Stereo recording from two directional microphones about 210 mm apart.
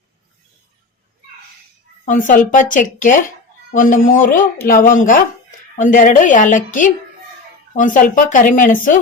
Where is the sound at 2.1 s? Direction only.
40° left (ahead or behind).